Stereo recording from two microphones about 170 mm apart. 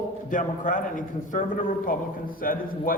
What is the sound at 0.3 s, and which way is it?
A man's voice, 50° left (ahead or behind).